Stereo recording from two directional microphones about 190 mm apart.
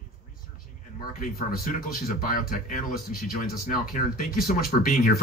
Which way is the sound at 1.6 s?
45° left (ahead or behind).